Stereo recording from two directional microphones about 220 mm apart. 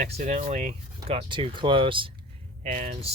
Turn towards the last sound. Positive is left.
turn(degrees=-30)  # may be behind; listen again after turning